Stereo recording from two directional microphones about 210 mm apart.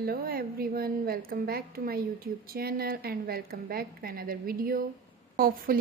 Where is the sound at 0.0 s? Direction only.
45° right (ahead or behind).